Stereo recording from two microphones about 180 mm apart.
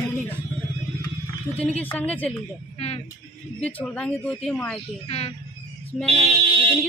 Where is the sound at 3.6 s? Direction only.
10° left (ahead or behind).